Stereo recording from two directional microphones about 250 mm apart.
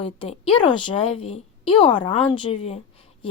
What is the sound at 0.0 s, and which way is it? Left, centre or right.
A woman's voice, left.